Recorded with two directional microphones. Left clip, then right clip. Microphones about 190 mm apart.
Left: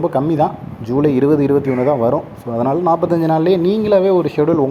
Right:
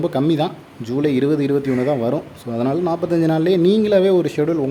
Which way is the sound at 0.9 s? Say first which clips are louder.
Left 4 dB; 5° right (ahead or behind).